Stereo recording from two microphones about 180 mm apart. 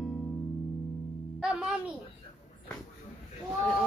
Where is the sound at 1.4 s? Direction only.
5° right (ahead or behind).